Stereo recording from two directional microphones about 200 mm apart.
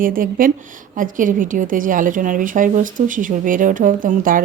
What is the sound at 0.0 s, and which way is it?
A woman's voice, 45° right (ahead or behind).